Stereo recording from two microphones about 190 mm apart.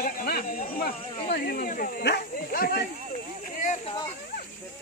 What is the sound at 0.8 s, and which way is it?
Speech, 55° left (ahead or behind).